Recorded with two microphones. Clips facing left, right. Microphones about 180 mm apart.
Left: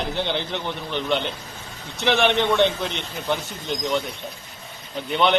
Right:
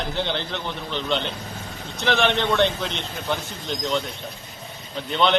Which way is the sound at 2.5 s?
Centre (ahead or behind).